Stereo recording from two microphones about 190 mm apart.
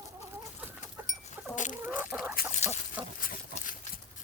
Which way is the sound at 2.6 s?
35° left (ahead or behind).